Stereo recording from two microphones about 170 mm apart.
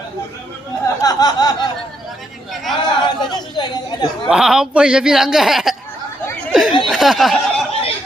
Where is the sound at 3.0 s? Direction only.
25° left (ahead or behind).